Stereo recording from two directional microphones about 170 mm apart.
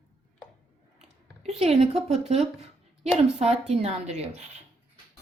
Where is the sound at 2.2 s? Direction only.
40° right (ahead or behind).